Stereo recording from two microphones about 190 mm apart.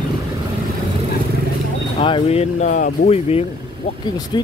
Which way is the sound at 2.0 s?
30° left (ahead or behind).